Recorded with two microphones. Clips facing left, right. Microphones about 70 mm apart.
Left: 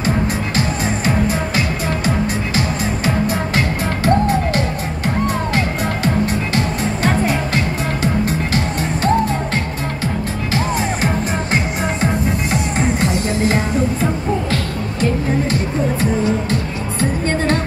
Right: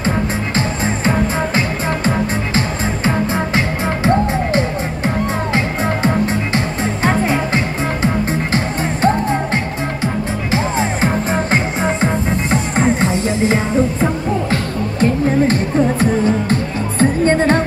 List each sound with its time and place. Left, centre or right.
0.6 s music: right
13.0 s music: right
14.5 s music: right